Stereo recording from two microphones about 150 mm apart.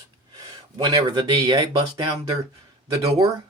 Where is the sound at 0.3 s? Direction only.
25° right (ahead or behind).